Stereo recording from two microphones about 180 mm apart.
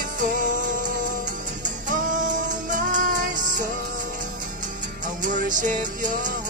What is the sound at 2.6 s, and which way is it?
Music, 45° right (ahead or behind).